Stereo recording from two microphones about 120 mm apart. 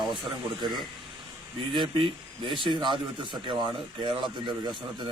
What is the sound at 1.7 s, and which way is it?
Speech, 40° right (ahead or behind).